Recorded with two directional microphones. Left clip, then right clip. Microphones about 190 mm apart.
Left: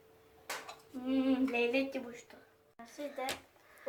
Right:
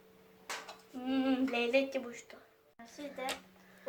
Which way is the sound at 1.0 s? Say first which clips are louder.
Even; 50° right (ahead or behind).